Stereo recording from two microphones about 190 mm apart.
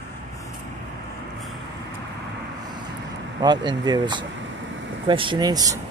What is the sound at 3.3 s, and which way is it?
Speech, 25° right (ahead or behind).